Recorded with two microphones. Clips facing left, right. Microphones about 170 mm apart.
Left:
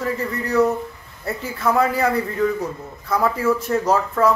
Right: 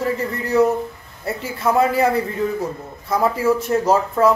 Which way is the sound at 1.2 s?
25° right (ahead or behind).